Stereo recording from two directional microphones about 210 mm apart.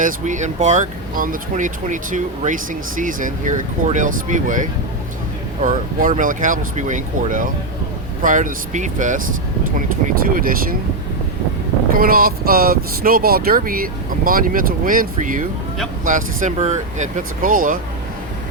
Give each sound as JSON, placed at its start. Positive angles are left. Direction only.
{"t": 0.0, "sound": "speech", "side_deg": -35}
{"t": 11.9, "sound": "speech", "side_deg": -45}